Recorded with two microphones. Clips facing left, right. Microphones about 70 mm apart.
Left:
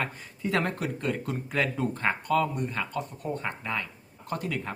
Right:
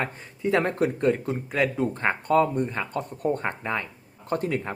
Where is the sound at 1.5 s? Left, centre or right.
Centre.